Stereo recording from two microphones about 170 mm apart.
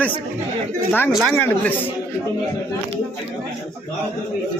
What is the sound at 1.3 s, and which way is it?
Speech, 10° left (ahead or behind).